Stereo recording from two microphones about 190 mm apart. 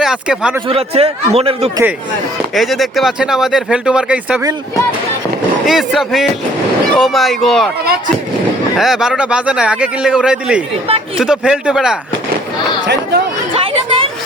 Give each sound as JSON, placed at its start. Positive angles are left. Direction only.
{"t": 0.0, "sound": "speech", "side_deg": -5}
{"t": 0.7, "sound": "a man's voice", "side_deg": -30}
{"t": 2.6, "sound": "a man's voice", "side_deg": 0}
{"t": 5.6, "sound": "a man's voice", "side_deg": 0}
{"t": 8.7, "sound": "a man's voice", "side_deg": 0}
{"t": 12.8, "sound": "speech", "side_deg": -60}
{"t": 13.5, "sound": "chatter", "side_deg": -30}